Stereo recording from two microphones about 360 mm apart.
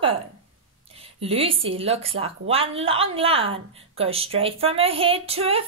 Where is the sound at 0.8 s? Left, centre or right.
Centre.